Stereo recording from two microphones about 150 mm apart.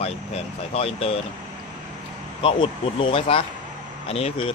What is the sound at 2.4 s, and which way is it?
Speech, 35° left (ahead or behind).